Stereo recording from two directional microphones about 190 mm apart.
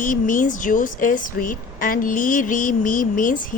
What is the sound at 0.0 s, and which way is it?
A woman's voice, 45° left (ahead or behind).